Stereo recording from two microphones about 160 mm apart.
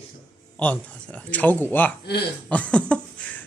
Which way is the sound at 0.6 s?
10° left (ahead or behind).